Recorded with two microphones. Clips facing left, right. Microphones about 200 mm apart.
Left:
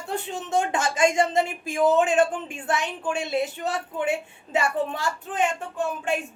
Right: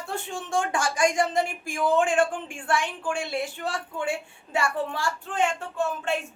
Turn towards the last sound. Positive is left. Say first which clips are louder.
# even
turn(degrees=15)  # may be behind; listen again after turning